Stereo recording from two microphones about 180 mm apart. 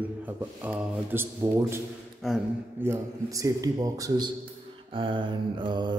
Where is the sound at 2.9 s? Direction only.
20° right (ahead or behind).